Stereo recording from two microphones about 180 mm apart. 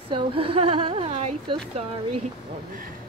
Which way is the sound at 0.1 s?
30° right (ahead or behind).